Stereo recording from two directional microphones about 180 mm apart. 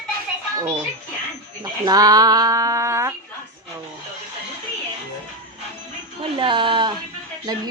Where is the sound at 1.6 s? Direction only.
20° right (ahead or behind).